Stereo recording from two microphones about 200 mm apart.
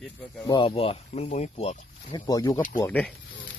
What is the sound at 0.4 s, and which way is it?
Speech, 25° left (ahead or behind).